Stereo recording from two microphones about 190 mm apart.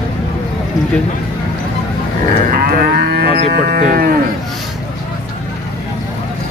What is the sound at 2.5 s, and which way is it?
Livestock, 55° right (ahead or behind).